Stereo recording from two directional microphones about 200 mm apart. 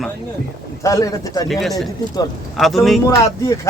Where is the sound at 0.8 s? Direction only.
15° left (ahead or behind).